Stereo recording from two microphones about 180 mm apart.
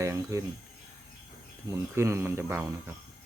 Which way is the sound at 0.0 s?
15° right (ahead or behind).